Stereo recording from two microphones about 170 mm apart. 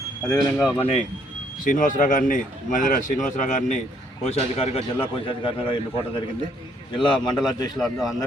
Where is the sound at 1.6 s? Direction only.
50° left (ahead or behind); by 5.8 s 30° left (ahead or behind).